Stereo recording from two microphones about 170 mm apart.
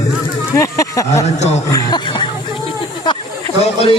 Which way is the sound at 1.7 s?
25° left (ahead or behind).